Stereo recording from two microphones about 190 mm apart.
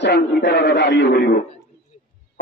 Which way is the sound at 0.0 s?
65° left (ahead or behind).